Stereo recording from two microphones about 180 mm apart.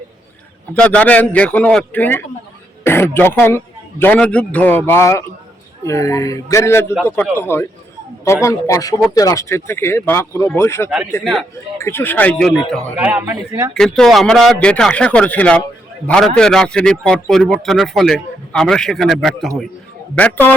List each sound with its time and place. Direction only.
0.7 s speech: 5° left (ahead or behind)
10.8 s a man's voice: 5° right (ahead or behind)
11.8 s a man's voice: 15° left (ahead or behind); by 13.3 s 10° right (ahead or behind)
13.7 s a man's voice: 5° left (ahead or behind)